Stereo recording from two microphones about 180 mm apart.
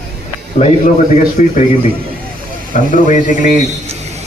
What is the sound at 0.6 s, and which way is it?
Speech, 40° left (ahead or behind).